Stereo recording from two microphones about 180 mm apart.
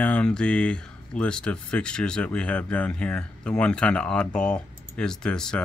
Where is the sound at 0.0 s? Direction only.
5° left (ahead or behind).